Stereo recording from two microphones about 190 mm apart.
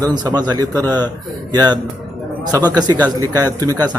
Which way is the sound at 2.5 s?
20° right (ahead or behind).